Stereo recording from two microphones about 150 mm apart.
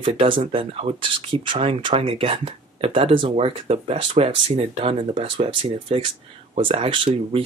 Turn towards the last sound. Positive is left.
turn(degrees=-35)  # may be behind; listen again after turning